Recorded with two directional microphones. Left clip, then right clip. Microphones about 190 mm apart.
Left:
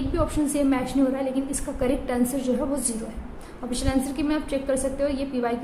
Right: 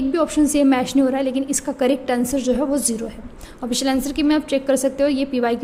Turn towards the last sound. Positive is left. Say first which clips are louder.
# right 6 dB
turn(degrees=-40)  # may be behind; listen again after turning